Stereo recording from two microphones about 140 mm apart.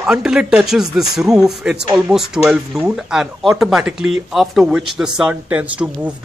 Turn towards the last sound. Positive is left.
turn(degrees=-10)  # may be behind; listen again after turning